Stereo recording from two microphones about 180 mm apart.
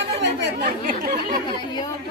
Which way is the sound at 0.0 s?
65° right (ahead or behind).